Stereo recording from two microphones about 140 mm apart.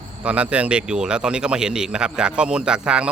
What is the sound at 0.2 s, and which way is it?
A man's voice, 10° right (ahead or behind).